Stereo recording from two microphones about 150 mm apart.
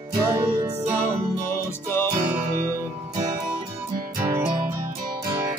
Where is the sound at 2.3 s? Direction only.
15° right (ahead or behind).